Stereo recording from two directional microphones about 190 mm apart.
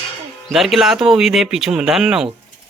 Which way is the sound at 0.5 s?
Centre (ahead or behind).